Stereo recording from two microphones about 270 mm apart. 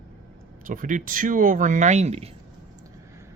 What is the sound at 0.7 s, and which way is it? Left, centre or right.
Speech, right.